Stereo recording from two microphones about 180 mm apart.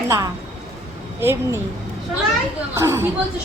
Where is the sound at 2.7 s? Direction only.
15° right (ahead or behind).